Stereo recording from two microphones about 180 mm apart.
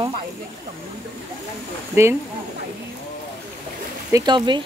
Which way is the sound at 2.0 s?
15° right (ahead or behind).